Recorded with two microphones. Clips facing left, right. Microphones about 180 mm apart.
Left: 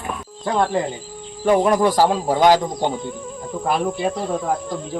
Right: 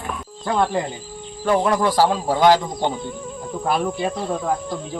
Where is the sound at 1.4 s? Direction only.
20° left (ahead or behind).